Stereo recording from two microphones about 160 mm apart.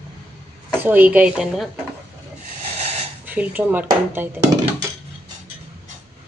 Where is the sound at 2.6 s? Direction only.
40° right (ahead or behind).